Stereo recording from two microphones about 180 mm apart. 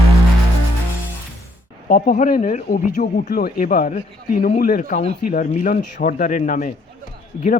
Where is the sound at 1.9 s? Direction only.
50° left (ahead or behind).